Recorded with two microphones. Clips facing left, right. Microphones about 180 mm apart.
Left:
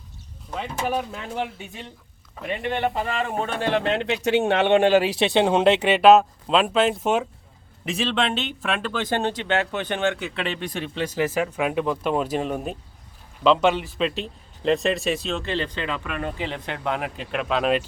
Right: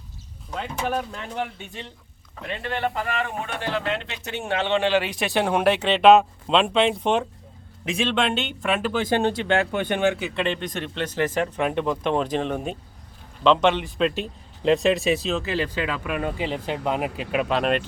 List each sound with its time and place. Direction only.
0.5 s speech: 5° left (ahead or behind)
2.5 s speech: 20° left (ahead or behind)
4.0 s speech: 75° left (ahead or behind); by 5.3 s 35° left (ahead or behind)
5.3 s speech: 20° left (ahead or behind)
5.8 s speech: 5° left (ahead or behind)